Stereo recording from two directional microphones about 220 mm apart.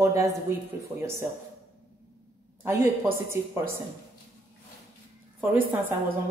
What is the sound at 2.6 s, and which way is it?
Speech, 10° right (ahead or behind).